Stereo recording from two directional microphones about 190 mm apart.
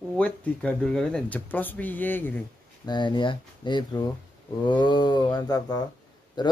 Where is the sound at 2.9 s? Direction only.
25° left (ahead or behind).